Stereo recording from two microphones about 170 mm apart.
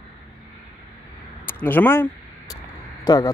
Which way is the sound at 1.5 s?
10° left (ahead or behind).